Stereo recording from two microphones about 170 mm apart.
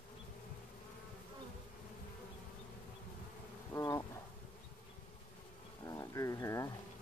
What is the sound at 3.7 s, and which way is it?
Insect, 20° left (ahead or behind).